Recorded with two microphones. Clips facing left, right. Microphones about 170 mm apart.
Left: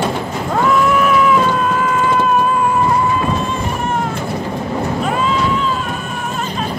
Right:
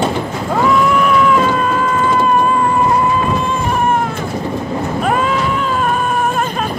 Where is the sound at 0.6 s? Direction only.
Centre (ahead or behind).